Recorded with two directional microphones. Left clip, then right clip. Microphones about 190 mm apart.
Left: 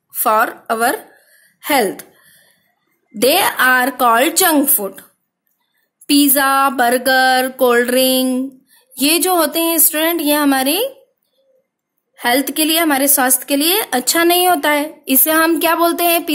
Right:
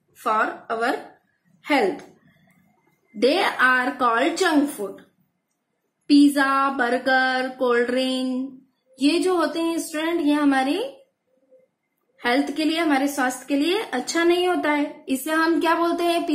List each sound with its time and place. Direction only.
0.2 s a woman's voice: 65° left (ahead or behind)
3.2 s a woman's voice: 60° left (ahead or behind)
6.0 s a woman's voice: 60° left (ahead or behind)
12.2 s a woman's voice: 60° left (ahead or behind)